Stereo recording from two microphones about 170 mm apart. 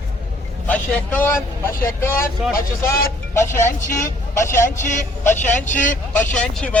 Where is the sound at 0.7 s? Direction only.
10° left (ahead or behind).